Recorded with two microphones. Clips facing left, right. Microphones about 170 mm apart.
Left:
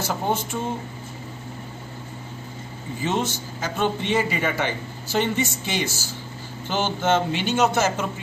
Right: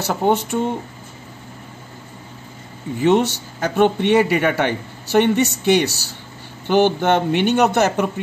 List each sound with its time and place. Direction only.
0.0 s speech: 65° right (ahead or behind)
3.0 s a man's voice: 65° right (ahead or behind)